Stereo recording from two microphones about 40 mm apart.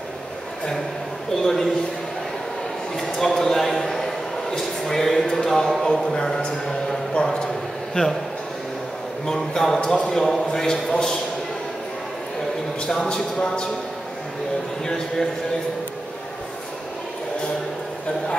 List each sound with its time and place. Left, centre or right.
1.4 s a man's voice: centre
3.0 s a sound: centre
6.0 s a man's voice: centre
9.2 s a man's voice: centre
12.8 s music: centre